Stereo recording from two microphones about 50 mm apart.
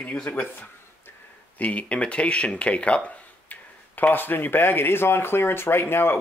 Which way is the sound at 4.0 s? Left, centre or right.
Left.